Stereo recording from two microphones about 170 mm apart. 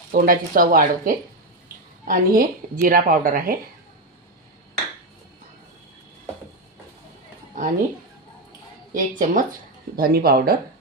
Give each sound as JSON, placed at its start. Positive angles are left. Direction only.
{"t": 0.1, "sound": "speech", "side_deg": -55}
{"t": 7.6, "sound": "a sound", "side_deg": -50}
{"t": 8.9, "sound": "speech", "side_deg": -55}